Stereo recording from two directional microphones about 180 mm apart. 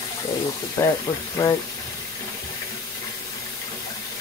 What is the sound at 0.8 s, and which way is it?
Speech, 20° left (ahead or behind).